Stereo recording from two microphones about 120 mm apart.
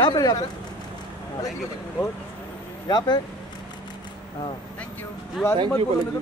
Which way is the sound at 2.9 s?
35° left (ahead or behind).